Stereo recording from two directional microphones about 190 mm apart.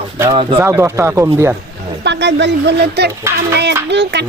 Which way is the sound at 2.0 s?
65° right (ahead or behind).